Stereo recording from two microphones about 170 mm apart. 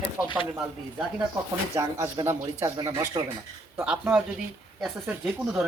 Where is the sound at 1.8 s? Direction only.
15° right (ahead or behind).